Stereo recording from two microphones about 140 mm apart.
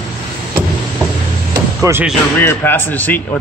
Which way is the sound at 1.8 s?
20° right (ahead or behind).